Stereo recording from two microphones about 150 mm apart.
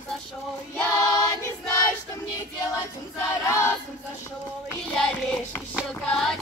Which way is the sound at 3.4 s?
15° left (ahead or behind).